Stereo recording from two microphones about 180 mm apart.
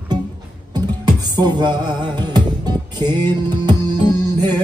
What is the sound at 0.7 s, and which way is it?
Music, 20° right (ahead or behind).